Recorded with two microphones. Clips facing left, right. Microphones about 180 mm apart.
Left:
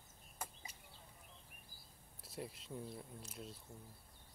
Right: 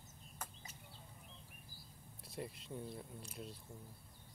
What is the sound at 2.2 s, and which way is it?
Speech, centre (ahead or behind).